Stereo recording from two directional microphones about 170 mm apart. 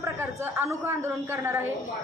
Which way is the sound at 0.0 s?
15° right (ahead or behind).